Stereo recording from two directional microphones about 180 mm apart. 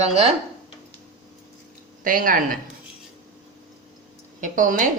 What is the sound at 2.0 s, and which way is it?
Speech, 50° right (ahead or behind).